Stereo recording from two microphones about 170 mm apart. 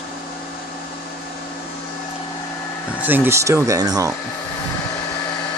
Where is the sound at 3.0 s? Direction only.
10° right (ahead or behind).